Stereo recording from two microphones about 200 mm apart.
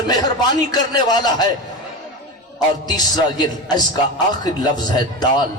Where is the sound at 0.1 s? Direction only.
20° left (ahead or behind).